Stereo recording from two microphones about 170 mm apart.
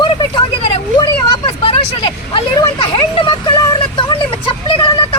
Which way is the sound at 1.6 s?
30° left (ahead or behind).